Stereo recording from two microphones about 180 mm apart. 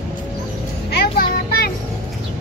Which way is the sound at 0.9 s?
60° left (ahead or behind).